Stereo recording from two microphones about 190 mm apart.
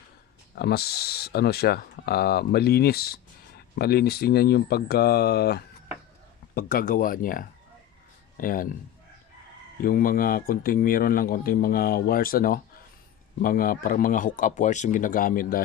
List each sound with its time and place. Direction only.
0.5 s speech: 55° left (ahead or behind)
9.8 s speech: 50° left (ahead or behind)